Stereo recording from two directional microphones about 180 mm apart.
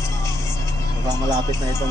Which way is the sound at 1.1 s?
20° right (ahead or behind).